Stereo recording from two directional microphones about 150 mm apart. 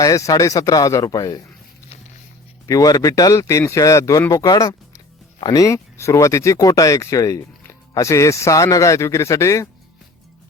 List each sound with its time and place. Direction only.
0.3 s speech: 20° left (ahead or behind)
2.6 s speech: 25° left (ahead or behind)